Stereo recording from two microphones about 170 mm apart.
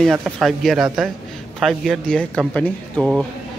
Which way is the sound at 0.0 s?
Centre (ahead or behind).